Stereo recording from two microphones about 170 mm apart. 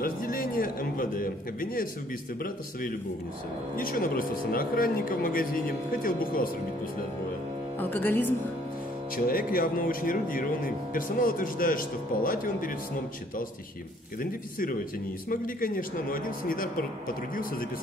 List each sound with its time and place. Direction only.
0.0 s a man's voice: 55° left (ahead or behind)
3.7 s speech: 55° left (ahead or behind)
7.8 s speech: 10° left (ahead or behind)
9.1 s speech: 55° left (ahead or behind)
14.2 s speech: 55° left (ahead or behind)